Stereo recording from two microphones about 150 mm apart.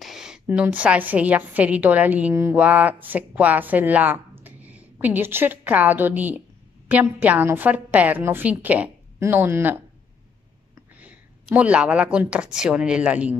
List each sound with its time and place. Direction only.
0.0 s a woman's voice: 5° right (ahead or behind)
11.0 s speech: 10° right (ahead or behind)